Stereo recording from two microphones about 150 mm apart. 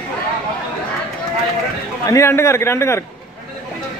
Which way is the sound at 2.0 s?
20° left (ahead or behind).